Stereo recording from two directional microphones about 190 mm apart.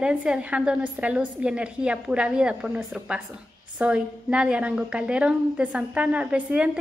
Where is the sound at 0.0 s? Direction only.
5° right (ahead or behind).